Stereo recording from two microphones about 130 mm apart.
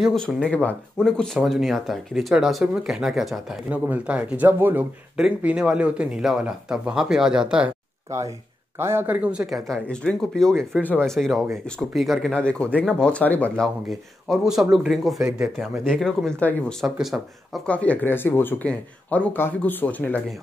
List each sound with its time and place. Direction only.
0.0 s speech: 5° left (ahead or behind)
8.7 s speech: 20° right (ahead or behind); by 13.7 s 10° left (ahead or behind)
13.8 s speech: centre (ahead or behind)
15.3 s speech: 20° right (ahead or behind)
15.6 s speech: 5° left (ahead or behind)
16.8 s speech: centre (ahead or behind)
17.6 s speech: 10° left (ahead or behind)